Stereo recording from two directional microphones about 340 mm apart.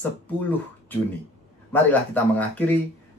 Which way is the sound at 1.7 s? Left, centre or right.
Centre.